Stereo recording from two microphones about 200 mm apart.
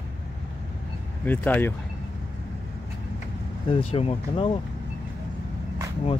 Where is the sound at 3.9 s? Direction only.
30° left (ahead or behind).